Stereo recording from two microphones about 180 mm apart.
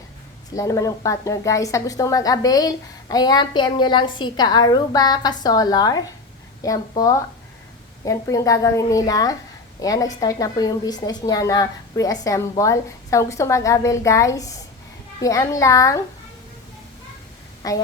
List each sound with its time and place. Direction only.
0.5 s a woman's voice: 20° left (ahead or behind)
17.6 s a woman's voice: 20° left (ahead or behind)